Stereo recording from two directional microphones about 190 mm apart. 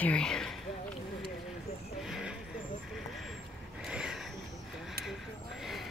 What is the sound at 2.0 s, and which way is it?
Vehicle, 5° right (ahead or behind).